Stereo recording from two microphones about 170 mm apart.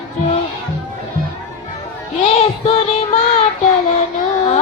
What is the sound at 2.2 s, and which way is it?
Music, 40° left (ahead or behind).